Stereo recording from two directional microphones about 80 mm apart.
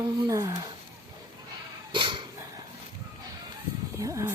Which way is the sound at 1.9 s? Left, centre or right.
Right.